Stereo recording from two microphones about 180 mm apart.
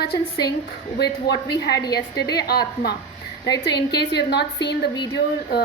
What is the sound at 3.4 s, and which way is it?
A woman's voice, 70° left (ahead or behind).